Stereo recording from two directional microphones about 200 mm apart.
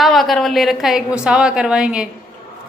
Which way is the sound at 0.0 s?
Centre (ahead or behind).